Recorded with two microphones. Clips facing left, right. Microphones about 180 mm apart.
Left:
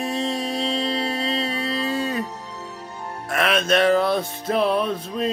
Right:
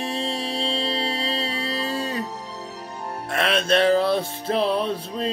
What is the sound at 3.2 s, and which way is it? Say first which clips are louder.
Music: left 1 dB; 30° right (ahead or behind).